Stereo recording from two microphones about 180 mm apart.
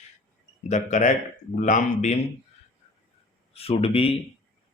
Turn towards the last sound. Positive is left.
turn(degrees=30)  # may be behind; listen again after turning